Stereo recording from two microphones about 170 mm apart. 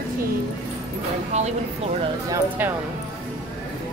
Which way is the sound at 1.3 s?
40° right (ahead or behind).